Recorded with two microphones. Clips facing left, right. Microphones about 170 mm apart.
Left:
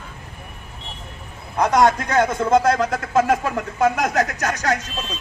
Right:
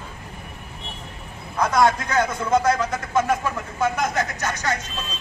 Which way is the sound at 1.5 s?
40° left (ahead or behind).